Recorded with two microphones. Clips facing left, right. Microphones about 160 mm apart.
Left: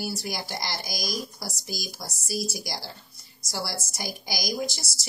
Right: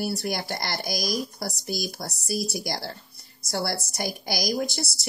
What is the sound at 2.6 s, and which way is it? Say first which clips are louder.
Speech: right 5 dB; 60° right (ahead or behind).